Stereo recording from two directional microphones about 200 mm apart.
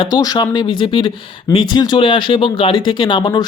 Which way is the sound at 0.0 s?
20° left (ahead or behind).